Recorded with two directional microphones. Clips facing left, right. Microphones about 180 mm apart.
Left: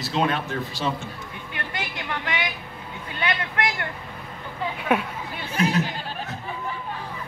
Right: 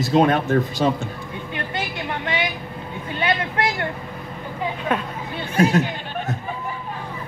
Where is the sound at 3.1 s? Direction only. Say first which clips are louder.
Right 4 dB; 25° right (ahead or behind).